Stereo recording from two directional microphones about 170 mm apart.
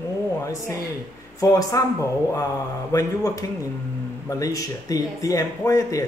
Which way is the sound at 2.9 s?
20° left (ahead or behind).